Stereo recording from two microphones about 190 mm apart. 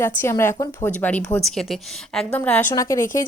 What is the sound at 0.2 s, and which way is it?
Speech, 15° left (ahead or behind).